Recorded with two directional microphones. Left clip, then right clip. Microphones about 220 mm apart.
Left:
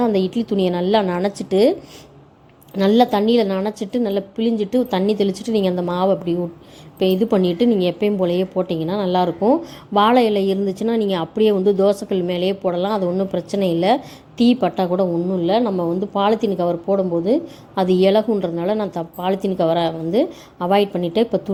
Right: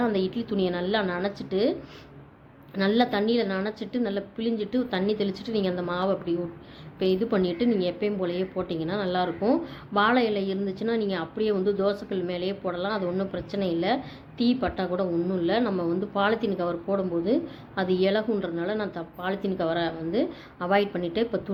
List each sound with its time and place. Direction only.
0.0 s a woman's voice: 30° left (ahead or behind)
2.7 s a woman's voice: 30° left (ahead or behind)